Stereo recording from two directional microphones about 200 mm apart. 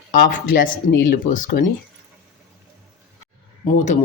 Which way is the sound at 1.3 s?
50° left (ahead or behind).